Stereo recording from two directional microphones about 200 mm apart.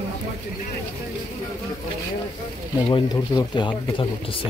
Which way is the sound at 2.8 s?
20° left (ahead or behind).